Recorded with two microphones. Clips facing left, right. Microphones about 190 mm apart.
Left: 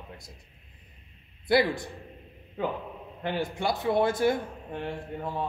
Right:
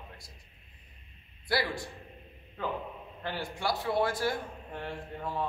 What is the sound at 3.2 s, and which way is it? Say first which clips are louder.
Speech: left 5 dB; 20° left (ahead or behind).